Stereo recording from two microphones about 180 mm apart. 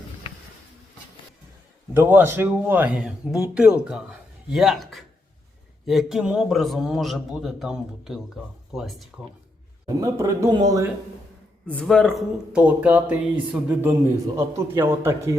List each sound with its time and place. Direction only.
1.9 s a man's voice: 10° right (ahead or behind)
9.8 s speech: 15° right (ahead or behind)
11.6 s speech: 5° left (ahead or behind); by 15.4 s 15° right (ahead or behind)